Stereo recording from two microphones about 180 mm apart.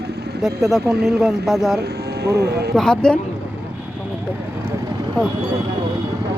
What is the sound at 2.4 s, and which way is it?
Speech, 65° right (ahead or behind).